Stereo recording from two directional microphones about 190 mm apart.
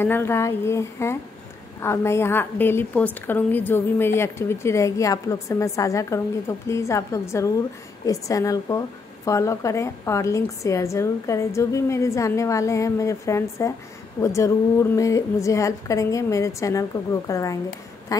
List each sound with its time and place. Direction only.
0.0 s a woman's voice: 10° left (ahead or behind)